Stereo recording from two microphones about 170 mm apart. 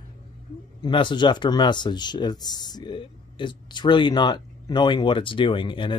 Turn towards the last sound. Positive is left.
turn(degrees=30)  # may be behind; listen again after turning